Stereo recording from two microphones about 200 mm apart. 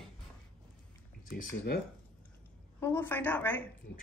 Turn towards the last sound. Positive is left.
turn(degrees=10)  # may be behind; listen again after turning